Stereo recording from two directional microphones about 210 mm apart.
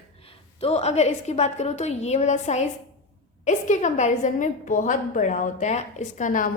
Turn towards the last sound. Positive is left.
turn(degrees=40)  # may be behind; listen again after turning